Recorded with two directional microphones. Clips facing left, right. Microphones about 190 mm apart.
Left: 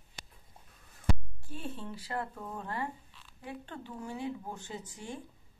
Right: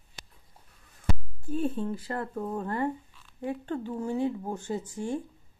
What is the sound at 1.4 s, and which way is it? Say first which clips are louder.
Speech: right 12 dB; 50° right (ahead or behind).